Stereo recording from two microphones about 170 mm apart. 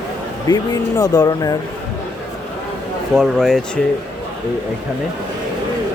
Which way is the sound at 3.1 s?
Centre (ahead or behind).